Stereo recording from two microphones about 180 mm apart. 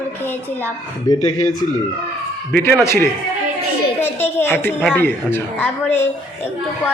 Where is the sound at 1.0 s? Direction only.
20° left (ahead or behind).